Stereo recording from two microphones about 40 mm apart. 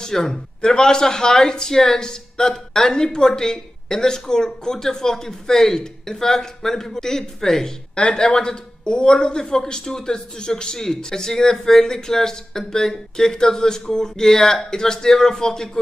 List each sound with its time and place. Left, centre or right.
0.0 s a man's voice: centre
7.9 s a man's voice: left